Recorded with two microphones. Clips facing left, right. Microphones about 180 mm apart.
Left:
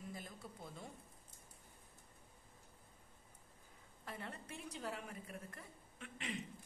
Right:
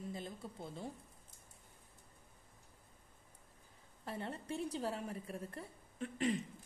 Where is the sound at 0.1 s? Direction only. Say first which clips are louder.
Right 5 dB; 25° right (ahead or behind).